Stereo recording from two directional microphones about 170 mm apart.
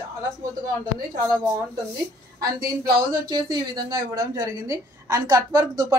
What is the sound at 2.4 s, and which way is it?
Speech, 20° right (ahead or behind).